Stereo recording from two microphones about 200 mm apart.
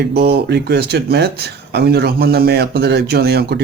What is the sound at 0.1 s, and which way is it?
Speech, 55° right (ahead or behind).